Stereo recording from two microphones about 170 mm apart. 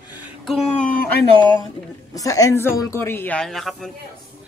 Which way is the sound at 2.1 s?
20° left (ahead or behind).